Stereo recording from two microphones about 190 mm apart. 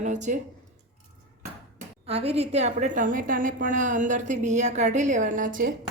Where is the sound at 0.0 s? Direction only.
40° right (ahead or behind).